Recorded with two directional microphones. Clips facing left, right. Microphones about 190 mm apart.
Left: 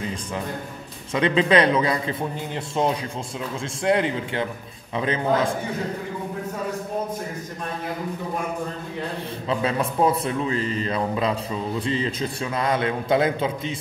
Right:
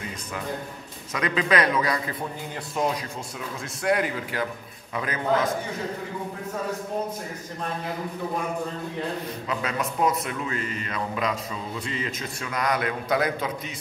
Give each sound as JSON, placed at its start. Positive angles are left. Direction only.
{"t": 1.1, "sound": "a man's voice", "side_deg": 25}
{"t": 9.5, "sound": "a man's voice", "side_deg": 30}